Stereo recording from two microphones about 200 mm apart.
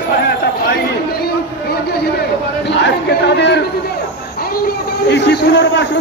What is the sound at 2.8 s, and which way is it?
Speech, 55° left (ahead or behind).